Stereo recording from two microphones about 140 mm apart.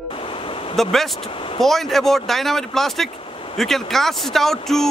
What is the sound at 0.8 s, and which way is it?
Speech, centre (ahead or behind).